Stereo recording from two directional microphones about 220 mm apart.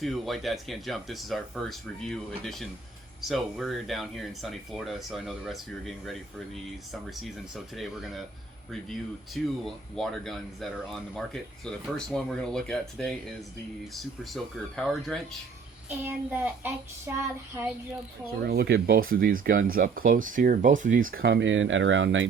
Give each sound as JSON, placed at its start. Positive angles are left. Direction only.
{"t": 0.0, "sound": "speech", "side_deg": 0}
{"t": 14.3, "sound": "speech", "side_deg": 0}
{"t": 16.0, "sound": "child singing", "side_deg": -10}
{"t": 18.3, "sound": "speech", "side_deg": -45}